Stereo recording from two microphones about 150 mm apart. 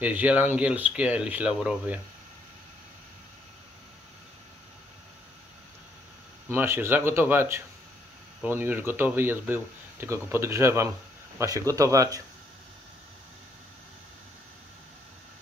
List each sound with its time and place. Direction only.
0.0 s speech: 10° right (ahead or behind)
6.5 s speech: 15° right (ahead or behind)